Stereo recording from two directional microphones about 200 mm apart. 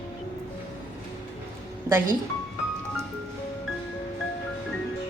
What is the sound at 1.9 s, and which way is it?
Speech, 15° right (ahead or behind).